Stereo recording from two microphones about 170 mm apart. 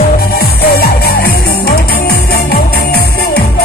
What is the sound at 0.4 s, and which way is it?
Music, 60° left (ahead or behind).